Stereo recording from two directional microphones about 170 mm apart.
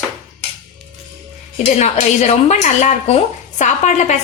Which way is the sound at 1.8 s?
40° left (ahead or behind).